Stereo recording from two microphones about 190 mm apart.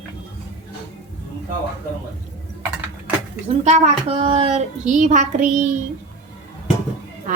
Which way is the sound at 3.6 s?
35° right (ahead or behind).